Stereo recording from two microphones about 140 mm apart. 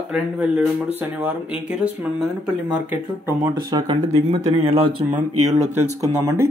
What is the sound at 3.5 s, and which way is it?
Speech, 35° right (ahead or behind).